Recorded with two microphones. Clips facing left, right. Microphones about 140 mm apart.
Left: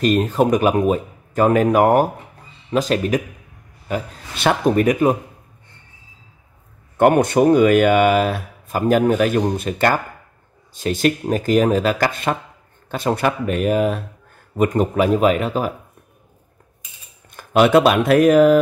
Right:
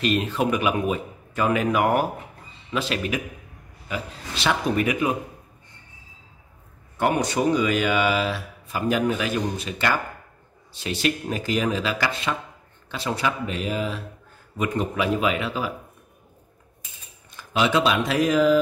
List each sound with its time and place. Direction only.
0.0 s speech: 45° left (ahead or behind)
7.0 s speech: 55° left (ahead or behind)
17.3 s speech: 55° left (ahead or behind)